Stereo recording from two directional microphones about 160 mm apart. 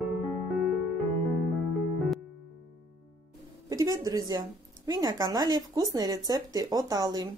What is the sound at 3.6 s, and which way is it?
A woman's voice, 20° right (ahead or behind).